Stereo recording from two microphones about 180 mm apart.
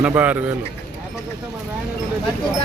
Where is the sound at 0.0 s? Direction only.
10° right (ahead or behind).